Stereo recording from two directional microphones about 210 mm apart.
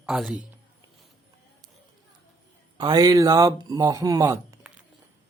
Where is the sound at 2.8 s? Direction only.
20° right (ahead or behind).